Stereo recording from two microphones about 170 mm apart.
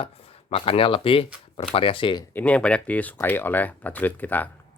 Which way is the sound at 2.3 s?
10° left (ahead or behind).